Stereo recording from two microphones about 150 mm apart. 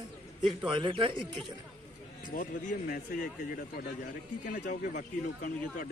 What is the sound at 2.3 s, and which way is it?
Speech, 65° left (ahead or behind).